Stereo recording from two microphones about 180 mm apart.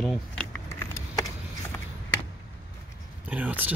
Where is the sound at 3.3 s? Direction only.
10° right (ahead or behind).